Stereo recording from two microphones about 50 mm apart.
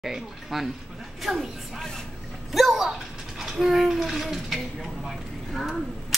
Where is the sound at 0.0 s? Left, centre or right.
Centre.